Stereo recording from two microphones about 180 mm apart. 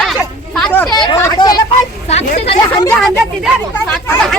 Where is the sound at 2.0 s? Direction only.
35° left (ahead or behind).